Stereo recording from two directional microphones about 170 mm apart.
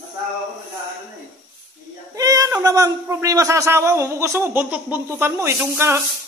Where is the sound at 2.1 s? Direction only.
20° right (ahead or behind).